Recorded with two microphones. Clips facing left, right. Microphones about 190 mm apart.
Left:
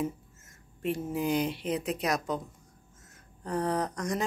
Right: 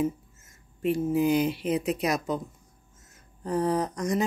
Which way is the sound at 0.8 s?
5° right (ahead or behind).